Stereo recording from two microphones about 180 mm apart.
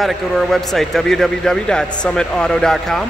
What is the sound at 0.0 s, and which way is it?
Speech, centre (ahead or behind).